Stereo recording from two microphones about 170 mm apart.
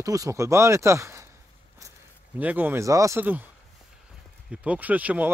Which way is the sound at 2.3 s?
10° right (ahead or behind).